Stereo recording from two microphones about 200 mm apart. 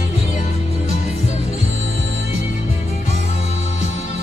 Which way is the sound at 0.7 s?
30° left (ahead or behind).